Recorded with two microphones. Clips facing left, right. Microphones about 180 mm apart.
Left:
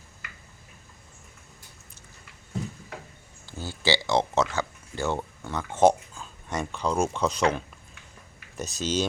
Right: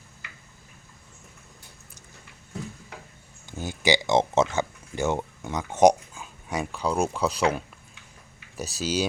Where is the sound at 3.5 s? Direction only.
20° right (ahead or behind).